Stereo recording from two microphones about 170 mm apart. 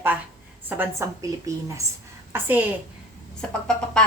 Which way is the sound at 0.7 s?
15° right (ahead or behind).